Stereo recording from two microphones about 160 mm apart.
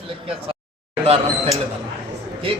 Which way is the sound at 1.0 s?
40° right (ahead or behind).